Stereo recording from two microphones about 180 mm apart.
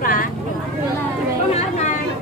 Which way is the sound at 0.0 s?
50° left (ahead or behind).